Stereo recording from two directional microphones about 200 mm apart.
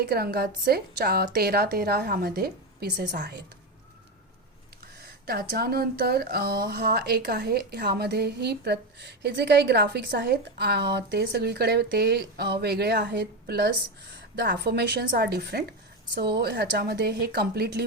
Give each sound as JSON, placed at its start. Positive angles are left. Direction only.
{"t": 0.0, "sound": "a woman's voice", "side_deg": -50}
{"t": 4.9, "sound": "a woman's voice", "side_deg": -50}